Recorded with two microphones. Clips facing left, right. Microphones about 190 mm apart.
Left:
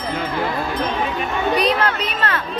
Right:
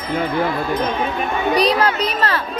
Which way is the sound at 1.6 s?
35° right (ahead or behind).